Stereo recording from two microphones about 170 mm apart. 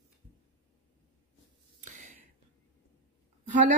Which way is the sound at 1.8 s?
45° right (ahead or behind).